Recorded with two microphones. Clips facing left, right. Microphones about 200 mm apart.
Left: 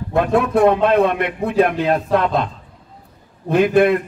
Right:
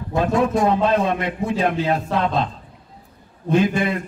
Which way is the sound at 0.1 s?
60° left (ahead or behind).